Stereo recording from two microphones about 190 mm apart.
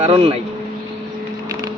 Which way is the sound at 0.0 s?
35° right (ahead or behind).